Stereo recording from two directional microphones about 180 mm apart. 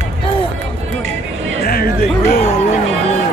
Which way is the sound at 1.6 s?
55° left (ahead or behind).